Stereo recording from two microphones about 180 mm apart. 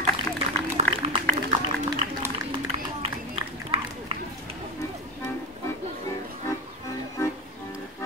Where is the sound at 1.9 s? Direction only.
25° right (ahead or behind).